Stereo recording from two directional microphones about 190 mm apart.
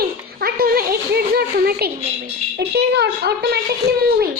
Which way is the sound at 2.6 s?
60° right (ahead or behind).